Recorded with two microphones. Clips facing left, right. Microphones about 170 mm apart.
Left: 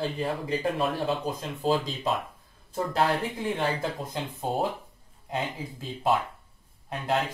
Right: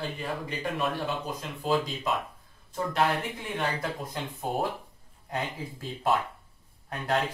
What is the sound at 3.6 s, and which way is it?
Speech, 25° left (ahead or behind).